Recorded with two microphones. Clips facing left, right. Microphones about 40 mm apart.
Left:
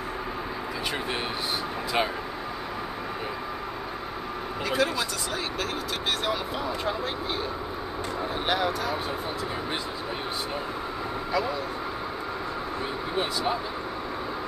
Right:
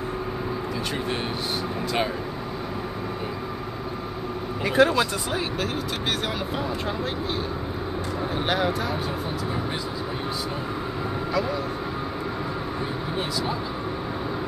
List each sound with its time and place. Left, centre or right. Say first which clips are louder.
4.7 s speech: right 8 dB; right
8.5 s speech: right 1 dB; centre